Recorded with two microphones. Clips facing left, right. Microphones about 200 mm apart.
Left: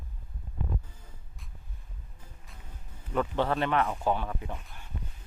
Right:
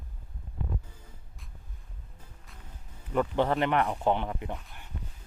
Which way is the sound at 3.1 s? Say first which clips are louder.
Right 2 dB; 15° right (ahead or behind).